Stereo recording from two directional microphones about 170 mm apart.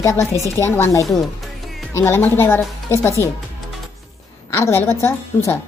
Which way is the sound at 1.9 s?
15° left (ahead or behind).